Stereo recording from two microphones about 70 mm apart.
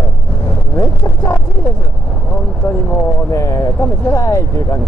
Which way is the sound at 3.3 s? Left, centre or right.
Left.